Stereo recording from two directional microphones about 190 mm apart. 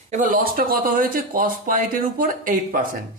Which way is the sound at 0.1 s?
45° right (ahead or behind).